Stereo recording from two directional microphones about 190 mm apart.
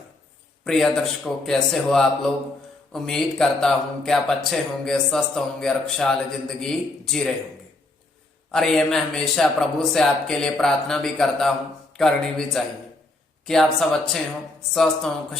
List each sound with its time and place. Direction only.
0.6 s speech: 5° left (ahead or behind)
8.5 s speech: 5° left (ahead or behind)